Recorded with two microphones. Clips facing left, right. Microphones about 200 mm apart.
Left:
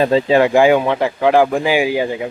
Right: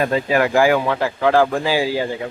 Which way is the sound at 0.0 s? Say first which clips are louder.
Left 5 dB; 25° left (ahead or behind).